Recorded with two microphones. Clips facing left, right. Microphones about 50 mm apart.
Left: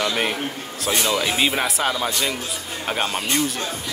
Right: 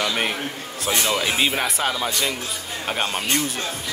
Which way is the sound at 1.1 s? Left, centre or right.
Centre.